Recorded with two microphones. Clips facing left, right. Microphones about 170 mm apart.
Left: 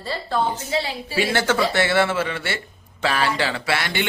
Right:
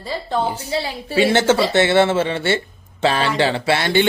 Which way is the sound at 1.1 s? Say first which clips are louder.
Right 6 dB; 25° right (ahead or behind).